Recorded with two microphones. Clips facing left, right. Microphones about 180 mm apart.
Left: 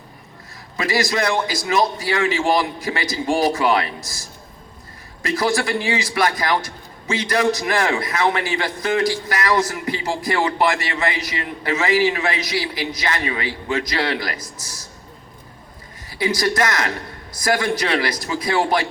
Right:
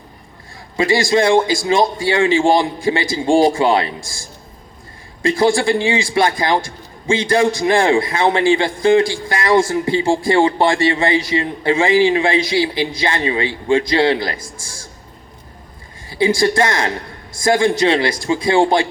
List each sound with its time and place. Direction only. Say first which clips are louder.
0.8 s a man's voice: right 6 dB; 25° right (ahead or behind)
16.0 s a man's voice: right 6 dB; 25° right (ahead or behind)